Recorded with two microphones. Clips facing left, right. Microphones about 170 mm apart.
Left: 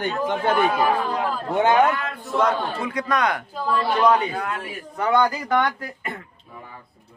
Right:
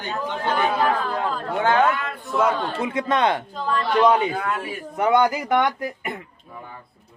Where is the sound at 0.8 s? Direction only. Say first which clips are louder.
Left 1 dB; 15° left (ahead or behind).